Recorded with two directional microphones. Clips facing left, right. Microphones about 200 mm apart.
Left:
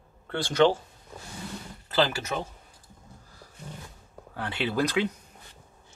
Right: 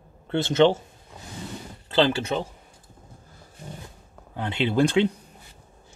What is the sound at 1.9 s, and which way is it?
Speech, 25° right (ahead or behind).